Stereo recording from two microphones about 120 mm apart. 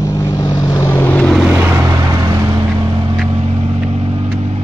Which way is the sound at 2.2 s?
25° right (ahead or behind).